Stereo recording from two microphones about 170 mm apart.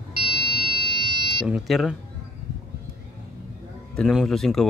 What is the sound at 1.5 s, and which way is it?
Speech, centre (ahead or behind).